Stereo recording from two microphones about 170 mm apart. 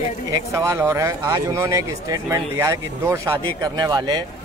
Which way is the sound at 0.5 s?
15° right (ahead or behind).